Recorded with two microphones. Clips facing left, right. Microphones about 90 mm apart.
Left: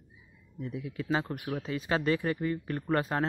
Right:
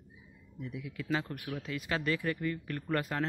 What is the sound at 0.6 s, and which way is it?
Speech, 30° left (ahead or behind).